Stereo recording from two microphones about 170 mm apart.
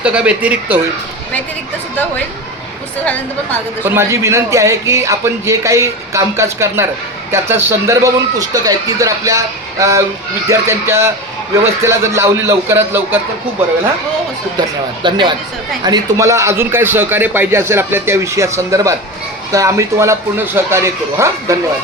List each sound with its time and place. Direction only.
0.0 s a man's voice: 5° right (ahead or behind)
3.8 s a man's voice: 15° right (ahead or behind)
15.0 s a man's voice: 25° right (ahead or behind)